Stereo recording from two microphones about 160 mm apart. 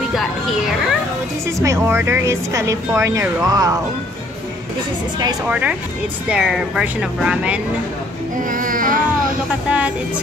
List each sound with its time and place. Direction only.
0.1 s speech: centre (ahead or behind)
1.6 s speech: 15° right (ahead or behind)
5.5 s speech: 5° right (ahead or behind)
8.4 s music: 55° right (ahead or behind)
9.7 s speech: 10° right (ahead or behind)